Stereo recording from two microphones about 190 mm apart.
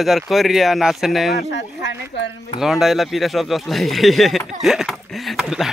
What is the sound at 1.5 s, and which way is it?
Speech, 70° left (ahead or behind).